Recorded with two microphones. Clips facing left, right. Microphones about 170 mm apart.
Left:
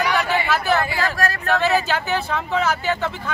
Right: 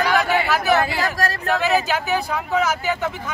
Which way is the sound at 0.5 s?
15° right (ahead or behind).